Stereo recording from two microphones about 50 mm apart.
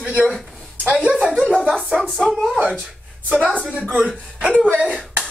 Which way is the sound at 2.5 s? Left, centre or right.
Right.